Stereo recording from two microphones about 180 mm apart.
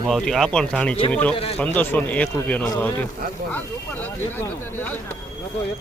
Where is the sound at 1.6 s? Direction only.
10° left (ahead or behind).